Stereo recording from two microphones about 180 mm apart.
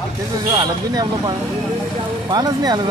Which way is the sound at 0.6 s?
25° right (ahead or behind).